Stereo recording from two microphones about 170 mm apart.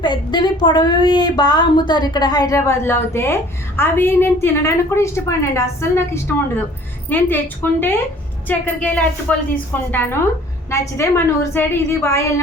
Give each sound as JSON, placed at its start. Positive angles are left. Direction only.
{"t": 0.0, "sound": "a woman's voice", "side_deg": 25}